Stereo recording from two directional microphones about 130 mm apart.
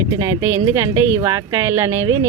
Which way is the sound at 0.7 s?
25° right (ahead or behind).